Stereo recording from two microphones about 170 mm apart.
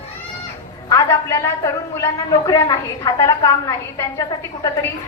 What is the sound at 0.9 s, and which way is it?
A woman's voice, 20° left (ahead or behind).